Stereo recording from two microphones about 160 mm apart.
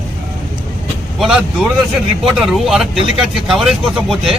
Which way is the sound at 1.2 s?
5° right (ahead or behind).